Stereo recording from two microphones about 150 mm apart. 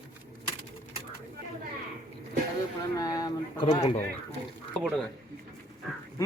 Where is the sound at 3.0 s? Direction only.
25° left (ahead or behind).